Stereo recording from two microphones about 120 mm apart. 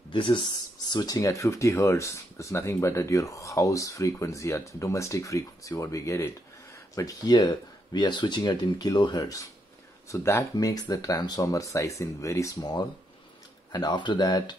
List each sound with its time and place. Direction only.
0.1 s speech: 40° left (ahead or behind)